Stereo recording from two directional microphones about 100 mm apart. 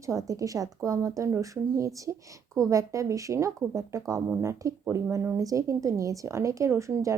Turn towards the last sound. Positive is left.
turn(degrees=-30)  # may be behind; listen again after turning